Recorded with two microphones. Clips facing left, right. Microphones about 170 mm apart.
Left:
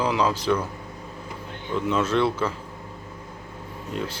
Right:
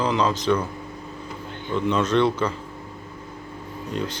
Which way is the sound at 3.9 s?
5° left (ahead or behind).